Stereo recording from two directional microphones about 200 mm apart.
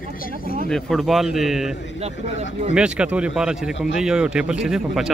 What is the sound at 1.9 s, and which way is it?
Speech, 30° right (ahead or behind).